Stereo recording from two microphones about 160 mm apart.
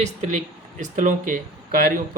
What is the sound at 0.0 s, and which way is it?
A man's voice, 45° right (ahead or behind).